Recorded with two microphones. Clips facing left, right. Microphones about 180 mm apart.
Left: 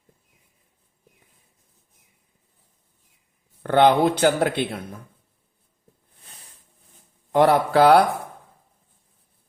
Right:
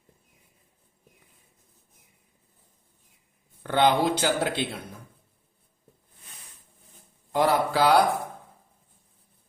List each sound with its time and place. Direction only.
3.6 s speech: 55° left (ahead or behind)
7.3 s speech: 60° left (ahead or behind)